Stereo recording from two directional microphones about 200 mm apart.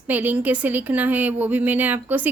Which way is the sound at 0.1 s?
10° right (ahead or behind).